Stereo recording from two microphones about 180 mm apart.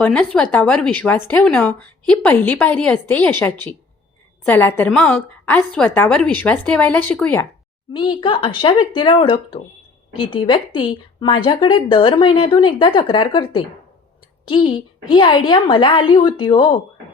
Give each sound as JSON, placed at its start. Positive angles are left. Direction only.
{"t": 0.0, "sound": "speech", "side_deg": 5}
{"t": 7.9, "sound": "a woman's voice", "side_deg": 30}